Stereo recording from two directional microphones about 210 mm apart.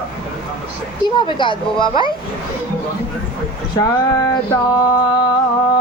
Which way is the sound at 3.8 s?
20° left (ahead or behind).